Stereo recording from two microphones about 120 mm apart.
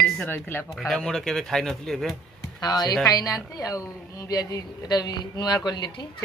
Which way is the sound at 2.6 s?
35° left (ahead or behind).